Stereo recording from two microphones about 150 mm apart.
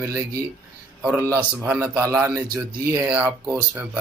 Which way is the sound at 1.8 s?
20° right (ahead or behind).